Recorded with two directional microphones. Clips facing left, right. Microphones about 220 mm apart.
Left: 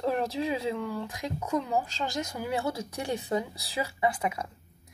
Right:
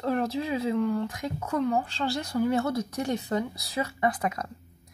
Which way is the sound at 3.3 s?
15° left (ahead or behind).